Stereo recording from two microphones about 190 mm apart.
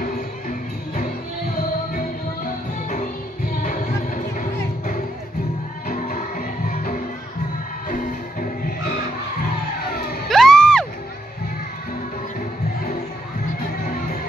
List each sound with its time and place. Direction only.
0.0 s music: 45° left (ahead or behind)
10.3 s music: centre (ahead or behind)